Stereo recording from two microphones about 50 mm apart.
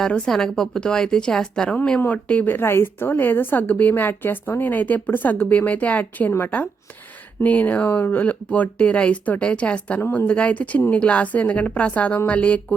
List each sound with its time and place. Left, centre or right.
0.3 s a woman's voice: centre; by 2.5 s left
2.5 s a woman's voice: left
7.4 s speech: left